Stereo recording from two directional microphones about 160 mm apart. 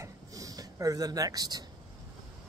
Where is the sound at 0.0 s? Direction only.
20° right (ahead or behind).